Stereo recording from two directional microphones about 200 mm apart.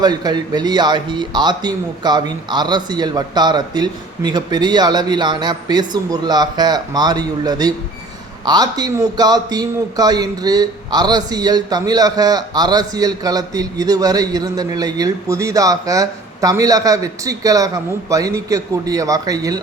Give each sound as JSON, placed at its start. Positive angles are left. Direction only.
{"t": 0.0, "sound": "a man's voice", "side_deg": -20}